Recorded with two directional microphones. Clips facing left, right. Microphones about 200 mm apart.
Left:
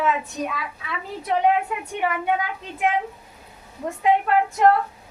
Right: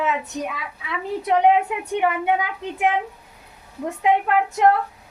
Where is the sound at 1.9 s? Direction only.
20° right (ahead or behind).